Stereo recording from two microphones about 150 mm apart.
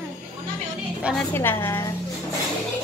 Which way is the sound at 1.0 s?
Centre (ahead or behind).